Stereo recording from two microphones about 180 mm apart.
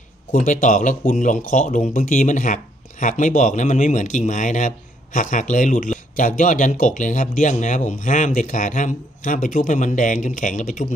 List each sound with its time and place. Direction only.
0.3 s speech: 45° left (ahead or behind)